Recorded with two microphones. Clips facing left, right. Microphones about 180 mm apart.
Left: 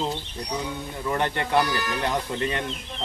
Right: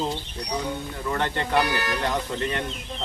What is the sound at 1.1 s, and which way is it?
Speech, 15° left (ahead or behind).